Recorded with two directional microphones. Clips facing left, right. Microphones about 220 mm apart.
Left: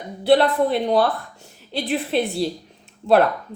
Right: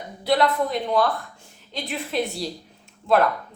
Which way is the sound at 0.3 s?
30° left (ahead or behind).